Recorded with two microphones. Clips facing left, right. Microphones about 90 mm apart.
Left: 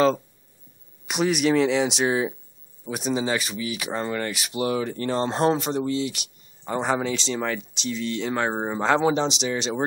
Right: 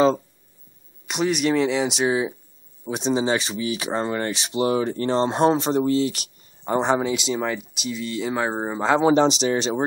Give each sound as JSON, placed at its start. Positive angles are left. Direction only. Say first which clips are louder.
{"t": 1.0, "sound": "speech", "louder": "even", "side_deg": 0}
{"t": 2.9, "sound": "speech", "louder": "right 3 dB", "side_deg": -30}
{"t": 5.3, "sound": "speech", "louder": "right 2 dB", "side_deg": -15}
{"t": 5.6, "sound": "speech", "louder": "right 5 dB", "side_deg": -35}
{"t": 7.0, "sound": "speech", "louder": "right 3 dB", "side_deg": -10}
{"t": 9.4, "sound": "speech", "louder": "right 4 dB", "side_deg": -40}